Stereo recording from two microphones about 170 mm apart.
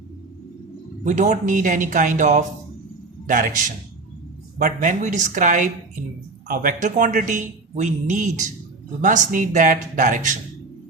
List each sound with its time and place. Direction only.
1.0 s speech: 45° right (ahead or behind)